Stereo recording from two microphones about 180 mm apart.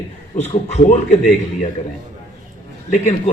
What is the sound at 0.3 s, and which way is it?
Speech, 40° left (ahead or behind).